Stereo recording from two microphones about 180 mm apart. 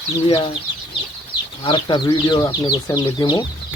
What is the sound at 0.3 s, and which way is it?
Speech, 30° left (ahead or behind).